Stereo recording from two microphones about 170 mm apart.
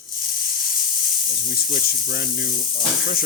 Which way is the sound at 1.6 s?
55° left (ahead or behind).